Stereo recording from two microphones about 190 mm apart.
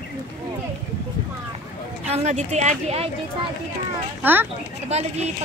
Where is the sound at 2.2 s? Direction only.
40° right (ahead or behind).